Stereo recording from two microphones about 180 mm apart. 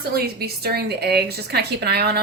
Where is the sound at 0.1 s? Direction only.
60° right (ahead or behind).